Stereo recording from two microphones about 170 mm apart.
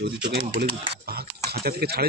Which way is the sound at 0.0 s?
70° right (ahead or behind).